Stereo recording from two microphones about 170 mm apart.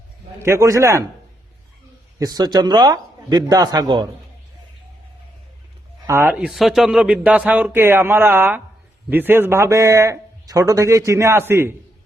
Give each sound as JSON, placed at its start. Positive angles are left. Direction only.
{"t": 0.3, "sound": "speech", "side_deg": -15}
{"t": 2.1, "sound": "speech", "side_deg": -20}
{"t": 6.1, "sound": "speech", "side_deg": -10}